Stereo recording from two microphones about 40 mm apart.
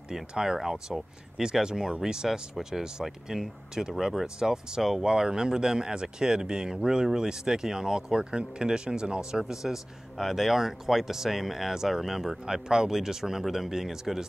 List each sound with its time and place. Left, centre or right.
0.3 s speech: centre